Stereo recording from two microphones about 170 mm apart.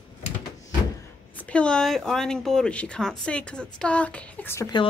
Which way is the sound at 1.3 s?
5° left (ahead or behind).